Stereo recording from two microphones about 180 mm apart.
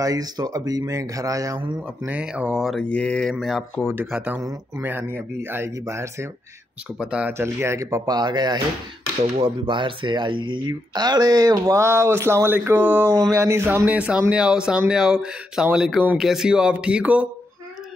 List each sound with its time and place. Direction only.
0.0 s speech: 20° right (ahead or behind)
2.0 s speech: 5° right (ahead or behind)
3.9 s speech: 10° right (ahead or behind)
9.2 s speech: 40° right (ahead or behind)
9.7 s speech: 25° right (ahead or behind); by 17.3 s 10° right (ahead or behind)